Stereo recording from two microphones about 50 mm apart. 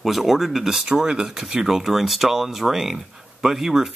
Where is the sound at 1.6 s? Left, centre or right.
Centre.